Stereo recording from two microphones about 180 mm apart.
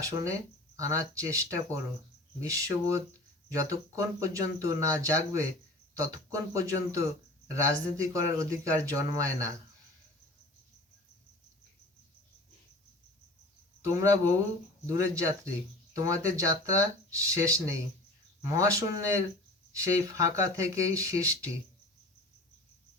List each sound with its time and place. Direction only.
0.0 s speech: 15° right (ahead or behind)
13.8 s speech: 15° right (ahead or behind)